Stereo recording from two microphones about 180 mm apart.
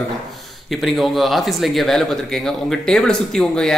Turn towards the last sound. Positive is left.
turn(degrees=5)  # may be behind; listen again after turning